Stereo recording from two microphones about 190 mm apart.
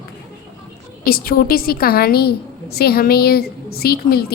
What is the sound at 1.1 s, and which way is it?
A woman's voice, 50° left (ahead or behind).